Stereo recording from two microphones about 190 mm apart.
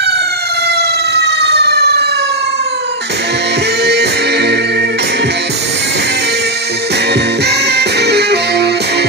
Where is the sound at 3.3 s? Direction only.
60° right (ahead or behind).